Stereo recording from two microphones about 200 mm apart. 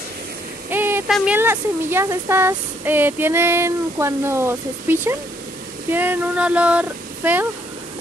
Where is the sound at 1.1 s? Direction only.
5° right (ahead or behind).